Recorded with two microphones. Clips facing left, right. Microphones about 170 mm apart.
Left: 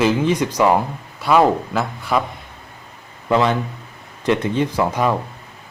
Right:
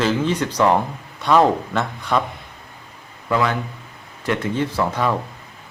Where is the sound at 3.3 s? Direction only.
25° left (ahead or behind).